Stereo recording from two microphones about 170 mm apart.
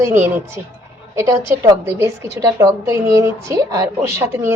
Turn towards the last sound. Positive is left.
turn(degrees=-15)  # may be behind; listen again after turning